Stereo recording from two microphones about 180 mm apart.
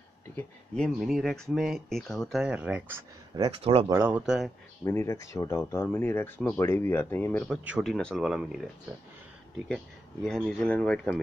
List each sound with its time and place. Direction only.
0.4 s speech: 5° left (ahead or behind)
3.3 s speech: 25° right (ahead or behind)
3.9 s speech: 15° right (ahead or behind)
4.8 s speech: 15° left (ahead or behind)
7.4 s speech: 5° right (ahead or behind)
10.2 s speech: 5° left (ahead or behind)